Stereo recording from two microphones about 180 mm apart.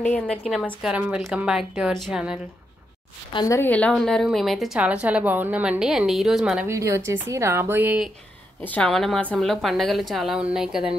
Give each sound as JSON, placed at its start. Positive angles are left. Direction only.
{"t": 0.0, "sound": "a woman's voice", "side_deg": 5}
{"t": 3.3, "sound": "a woman's voice", "side_deg": 15}
{"t": 6.7, "sound": "speech", "side_deg": -15}
{"t": 8.6, "sound": "a woman's voice", "side_deg": 5}